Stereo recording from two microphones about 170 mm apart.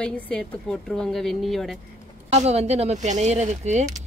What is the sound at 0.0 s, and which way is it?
Speech, 5° left (ahead or behind).